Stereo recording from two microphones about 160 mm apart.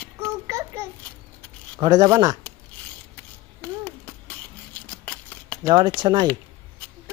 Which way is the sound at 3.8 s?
10° left (ahead or behind).